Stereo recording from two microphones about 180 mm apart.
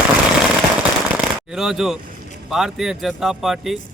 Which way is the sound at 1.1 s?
Centre (ahead or behind).